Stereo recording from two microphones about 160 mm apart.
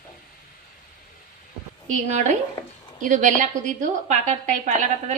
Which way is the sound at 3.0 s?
50° right (ahead or behind).